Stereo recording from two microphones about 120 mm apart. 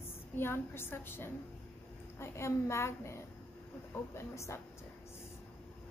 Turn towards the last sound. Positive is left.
turn(degrees=25)  # may be behind; listen again after turning